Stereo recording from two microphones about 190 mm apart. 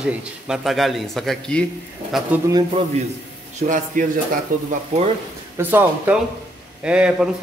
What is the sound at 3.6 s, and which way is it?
Speech, 45° right (ahead or behind).